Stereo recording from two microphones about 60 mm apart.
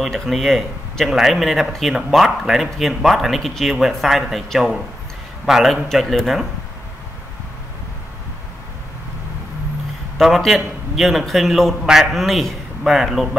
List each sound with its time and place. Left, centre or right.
0.0 s a man's voice: centre
10.1 s a man's voice: centre